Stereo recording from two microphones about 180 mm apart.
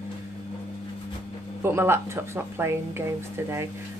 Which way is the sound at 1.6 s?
15° right (ahead or behind).